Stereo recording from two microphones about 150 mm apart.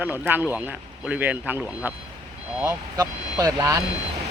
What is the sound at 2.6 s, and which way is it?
Speech, 20° right (ahead or behind).